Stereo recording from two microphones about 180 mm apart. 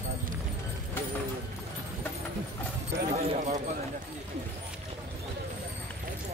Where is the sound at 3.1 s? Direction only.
40° right (ahead or behind).